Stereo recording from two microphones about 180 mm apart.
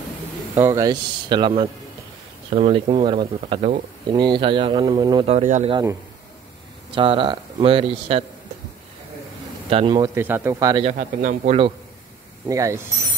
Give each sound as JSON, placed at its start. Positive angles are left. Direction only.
{"t": 0.6, "sound": "speech", "side_deg": -15}
{"t": 5.7, "sound": "speech", "side_deg": -20}
{"t": 9.7, "sound": "speech", "side_deg": -30}
{"t": 10.8, "sound": "a man's voice", "side_deg": -45}
{"t": 12.4, "sound": "mechanisms", "side_deg": -15}